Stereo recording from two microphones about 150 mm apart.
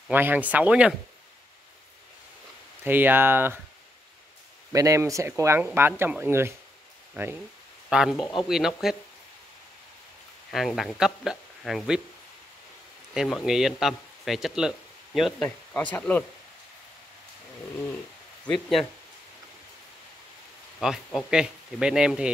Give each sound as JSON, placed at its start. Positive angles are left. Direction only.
{"t": 0.1, "sound": "speech", "side_deg": -10}
{"t": 2.8, "sound": "speech", "side_deg": -15}
{"t": 4.7, "sound": "speech", "side_deg": -20}
{"t": 7.9, "sound": "speech", "side_deg": -5}
{"t": 10.5, "sound": "speech", "side_deg": 0}
{"t": 13.1, "sound": "speech", "side_deg": 0}
{"t": 15.4, "sound": "speech", "side_deg": 10}
{"t": 18.5, "sound": "speech", "side_deg": 0}
{"t": 20.8, "sound": "speech", "side_deg": -5}